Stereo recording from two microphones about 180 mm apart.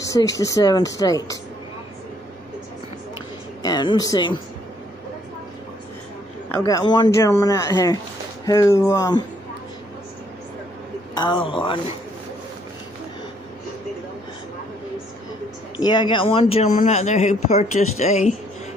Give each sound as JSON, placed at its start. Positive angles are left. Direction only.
{"t": 0.0, "sound": "speech", "side_deg": 20}
{"t": 3.6, "sound": "speech", "side_deg": 20}
{"t": 6.5, "sound": "speech", "side_deg": 20}
{"t": 11.1, "sound": "speech", "side_deg": 25}
{"t": 15.8, "sound": "speech", "side_deg": 25}